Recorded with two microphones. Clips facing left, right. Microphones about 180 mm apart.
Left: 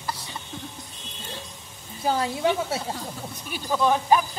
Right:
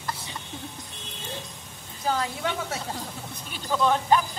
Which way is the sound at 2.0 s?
20° left (ahead or behind).